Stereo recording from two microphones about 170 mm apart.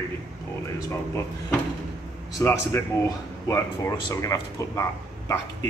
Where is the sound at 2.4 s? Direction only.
15° left (ahead or behind).